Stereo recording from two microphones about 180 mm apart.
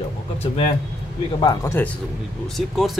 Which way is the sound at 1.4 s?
20° left (ahead or behind).